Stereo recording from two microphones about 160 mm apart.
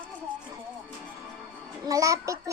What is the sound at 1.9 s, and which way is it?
Speech, 20° right (ahead or behind).